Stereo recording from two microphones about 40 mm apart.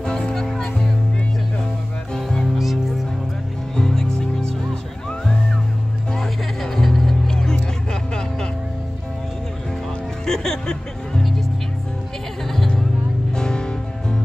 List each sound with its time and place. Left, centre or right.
0.3 s music: centre
2.1 s music: centre
2.4 s music: centre
3.7 s music: centre
6.1 s music: centre
7.2 s music: centre
10.2 s music: centre
13.3 s music: centre